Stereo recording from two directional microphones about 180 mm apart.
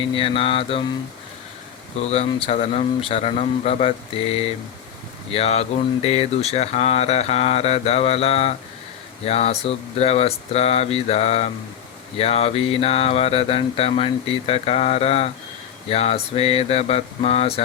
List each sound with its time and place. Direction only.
0.1 s speech: 30° left (ahead or behind)
2.0 s speech: 35° left (ahead or behind)